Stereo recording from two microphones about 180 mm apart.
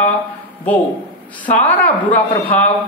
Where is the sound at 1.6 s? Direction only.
10° left (ahead or behind).